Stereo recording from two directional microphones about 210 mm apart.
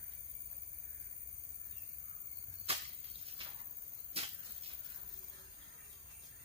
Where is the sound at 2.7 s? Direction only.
30° right (ahead or behind).